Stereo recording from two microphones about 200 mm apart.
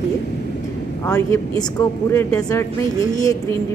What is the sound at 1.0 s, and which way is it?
Speech, 15° left (ahead or behind).